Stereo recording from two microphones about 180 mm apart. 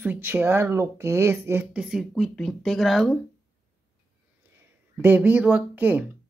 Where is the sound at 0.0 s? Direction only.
10° right (ahead or behind).